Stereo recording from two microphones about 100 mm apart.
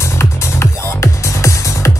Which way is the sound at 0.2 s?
25° left (ahead or behind).